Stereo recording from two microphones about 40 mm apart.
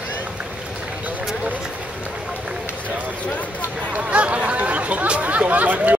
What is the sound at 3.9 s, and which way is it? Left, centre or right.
Chatter, right.